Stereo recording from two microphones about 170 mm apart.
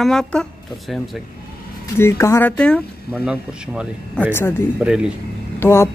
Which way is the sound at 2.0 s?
15° left (ahead or behind).